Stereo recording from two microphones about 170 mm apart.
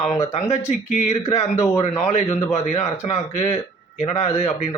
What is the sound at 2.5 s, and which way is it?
Speech, 45° left (ahead or behind).